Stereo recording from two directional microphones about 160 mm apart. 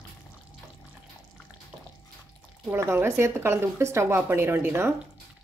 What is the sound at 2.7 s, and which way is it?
Speech, 15° right (ahead or behind).